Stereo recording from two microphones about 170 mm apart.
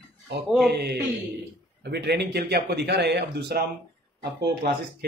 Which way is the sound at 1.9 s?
75° right (ahead or behind).